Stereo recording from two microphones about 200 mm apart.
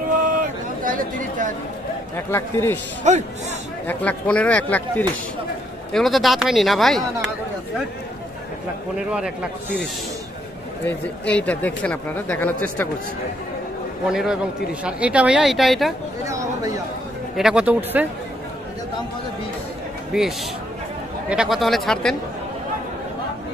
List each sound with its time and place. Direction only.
0.2 s a sound: 45° right (ahead or behind)
2.1 s speech: 10° left (ahead or behind)
3.1 s speech: 35° right (ahead or behind)
3.8 s speech: 5° left (ahead or behind)
10.9 s speech: 5° left (ahead or behind)
14.1 s speech: 5° right (ahead or behind)
16.3 s speech: 15° right (ahead or behind)
17.4 s speech: 5° right (ahead or behind)
20.1 s speech: centre (ahead or behind)